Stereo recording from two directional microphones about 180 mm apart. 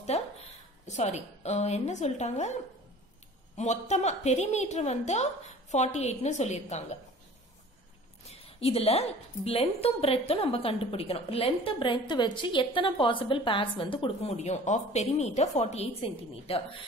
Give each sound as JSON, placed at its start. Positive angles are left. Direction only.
{"t": 0.1, "sound": "a sound", "side_deg": 35}
{"t": 0.8, "sound": "a woman's voice", "side_deg": 40}
{"t": 3.5, "sound": "a woman's voice", "side_deg": 40}
{"t": 8.3, "sound": "a woman's voice", "side_deg": 35}